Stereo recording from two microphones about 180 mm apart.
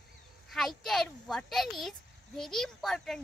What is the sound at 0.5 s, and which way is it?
Speech, centre (ahead or behind).